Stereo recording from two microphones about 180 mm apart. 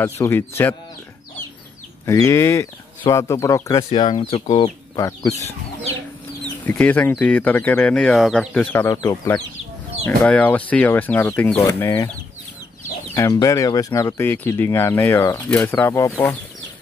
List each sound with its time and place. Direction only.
0.0 s speech: 15° left (ahead or behind)
2.0 s speech: 15° left (ahead or behind)
6.6 s speech: 10° left (ahead or behind)
8.7 s speech: 15° left (ahead or behind)
10.0 s speech: 10° left (ahead or behind)
13.1 s speech: 15° left (ahead or behind)